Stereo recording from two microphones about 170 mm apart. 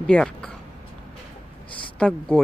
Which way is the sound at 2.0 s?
5° left (ahead or behind).